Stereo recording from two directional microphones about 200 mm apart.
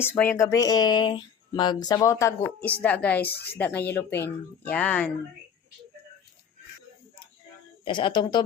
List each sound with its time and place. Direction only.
0.0 s speech: 10° left (ahead or behind)
7.9 s speech: 25° left (ahead or behind)